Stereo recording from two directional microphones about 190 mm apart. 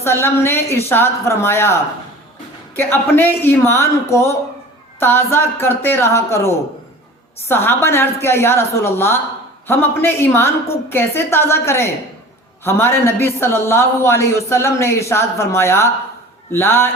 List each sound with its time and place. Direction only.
0.0 s a woman's voice: 15° left (ahead or behind)